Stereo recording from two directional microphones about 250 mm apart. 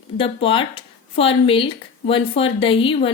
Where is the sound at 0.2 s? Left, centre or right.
Left.